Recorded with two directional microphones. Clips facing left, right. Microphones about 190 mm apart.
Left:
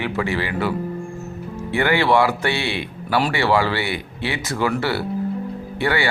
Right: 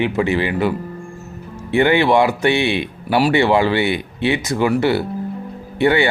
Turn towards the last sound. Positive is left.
turn(degrees=-20)  # may be behind; listen again after turning